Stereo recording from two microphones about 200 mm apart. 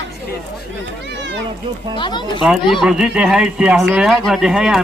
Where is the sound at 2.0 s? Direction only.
25° left (ahead or behind).